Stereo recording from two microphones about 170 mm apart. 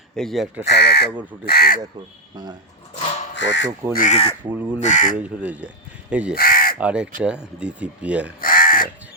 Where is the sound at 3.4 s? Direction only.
90° left.